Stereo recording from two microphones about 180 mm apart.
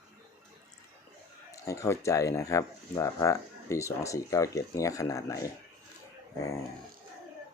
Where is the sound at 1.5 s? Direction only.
15° left (ahead or behind).